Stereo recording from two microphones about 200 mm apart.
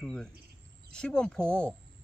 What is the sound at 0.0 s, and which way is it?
A man's voice, 5° left (ahead or behind).